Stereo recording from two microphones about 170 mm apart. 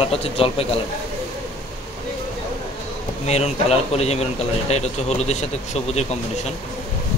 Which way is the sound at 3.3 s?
40° left (ahead or behind).